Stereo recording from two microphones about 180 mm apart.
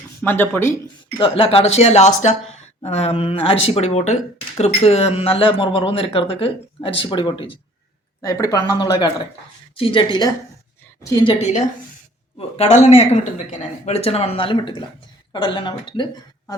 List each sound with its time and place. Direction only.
0.2 s speech: 10° left (ahead or behind)
1.2 s a woman's voice: 30° left (ahead or behind)
12.4 s a woman's voice: 35° left (ahead or behind)